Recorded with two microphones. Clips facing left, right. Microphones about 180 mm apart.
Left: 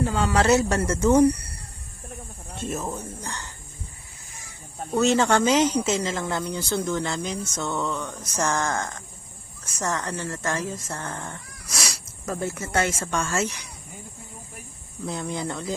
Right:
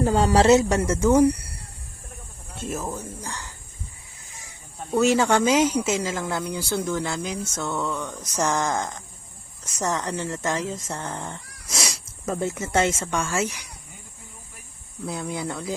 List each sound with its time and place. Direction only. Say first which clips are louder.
0.0 s speech: right 4 dB; 40° right (ahead or behind)
0.4 s speech: right 3 dB; 20° right (ahead or behind)
2.6 s speech: even; 5° right (ahead or behind)
4.9 s speech: right 1 dB; 10° right (ahead or behind)
15.0 s speech: even; 5° right (ahead or behind)